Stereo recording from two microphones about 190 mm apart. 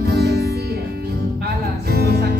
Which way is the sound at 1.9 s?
55° right (ahead or behind).